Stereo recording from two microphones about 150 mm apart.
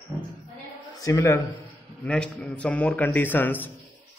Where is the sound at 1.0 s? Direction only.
20° left (ahead or behind).